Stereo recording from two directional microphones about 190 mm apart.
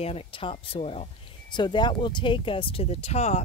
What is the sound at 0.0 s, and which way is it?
Speech, 30° left (ahead or behind).